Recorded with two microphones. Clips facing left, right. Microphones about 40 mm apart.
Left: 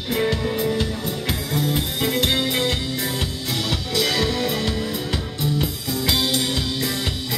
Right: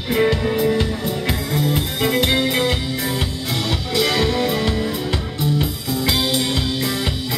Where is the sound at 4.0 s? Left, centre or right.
Centre.